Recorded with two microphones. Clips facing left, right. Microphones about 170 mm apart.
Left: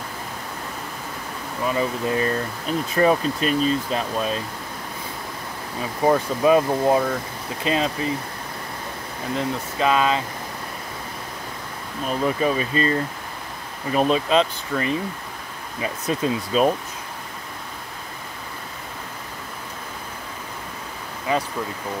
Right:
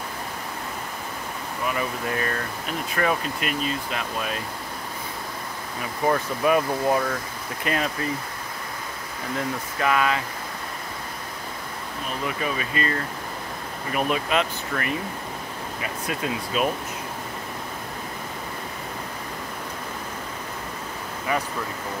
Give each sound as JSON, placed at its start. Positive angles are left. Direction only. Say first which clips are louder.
{"t": 1.7, "sound": "speech", "louder": "left 5 dB", "side_deg": 25}
{"t": 6.0, "sound": "speech", "louder": "left 4 dB", "side_deg": 25}
{"t": 9.4, "sound": "speech", "louder": "left 3 dB", "side_deg": 20}
{"t": 12.3, "sound": "speech", "louder": "left 7 dB", "side_deg": 35}